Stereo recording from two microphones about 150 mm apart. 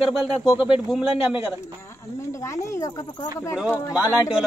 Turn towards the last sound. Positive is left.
turn(degrees=20)  # may be behind; listen again after turning